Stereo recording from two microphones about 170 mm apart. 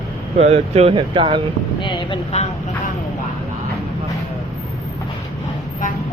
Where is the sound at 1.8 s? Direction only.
30° left (ahead or behind).